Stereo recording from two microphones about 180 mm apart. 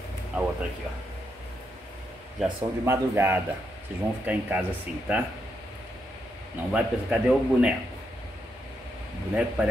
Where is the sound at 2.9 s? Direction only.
15° right (ahead or behind).